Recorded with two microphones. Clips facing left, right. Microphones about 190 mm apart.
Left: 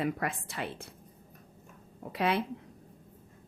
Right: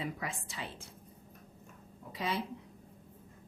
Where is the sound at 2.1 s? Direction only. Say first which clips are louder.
Left 7 dB; 65° left (ahead or behind).